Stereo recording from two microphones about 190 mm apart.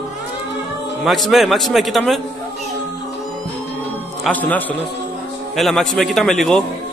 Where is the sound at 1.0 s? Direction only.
Centre (ahead or behind).